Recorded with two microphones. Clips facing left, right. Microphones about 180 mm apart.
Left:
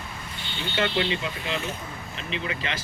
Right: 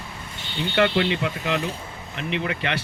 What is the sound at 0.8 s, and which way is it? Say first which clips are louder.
Speech: right 5 dB; 65° right (ahead or behind).